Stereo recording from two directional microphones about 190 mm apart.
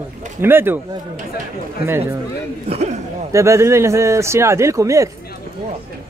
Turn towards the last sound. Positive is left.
turn(degrees=-15)  # may be behind; listen again after turning